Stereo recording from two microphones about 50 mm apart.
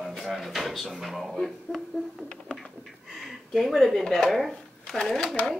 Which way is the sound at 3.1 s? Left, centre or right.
Centre.